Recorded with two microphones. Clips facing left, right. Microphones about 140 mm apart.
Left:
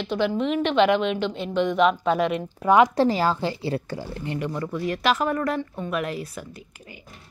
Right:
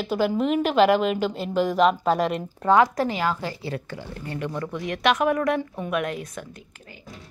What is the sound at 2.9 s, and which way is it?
Speech, 35° left (ahead or behind).